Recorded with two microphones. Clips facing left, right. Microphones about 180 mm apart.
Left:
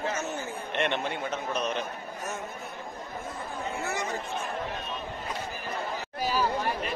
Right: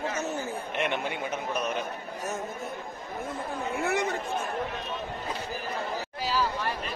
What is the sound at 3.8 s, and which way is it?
Chatter, 60° right (ahead or behind).